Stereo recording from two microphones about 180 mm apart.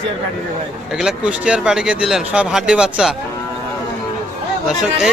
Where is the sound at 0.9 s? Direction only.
5° right (ahead or behind).